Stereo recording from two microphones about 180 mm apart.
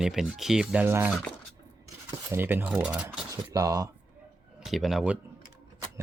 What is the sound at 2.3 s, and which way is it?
Speech, 10° right (ahead or behind).